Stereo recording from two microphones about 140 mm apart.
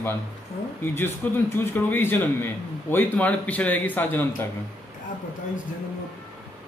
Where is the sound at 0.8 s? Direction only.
15° left (ahead or behind).